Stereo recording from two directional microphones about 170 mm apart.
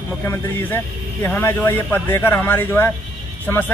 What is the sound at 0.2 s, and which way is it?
A man's voice, 15° left (ahead or behind).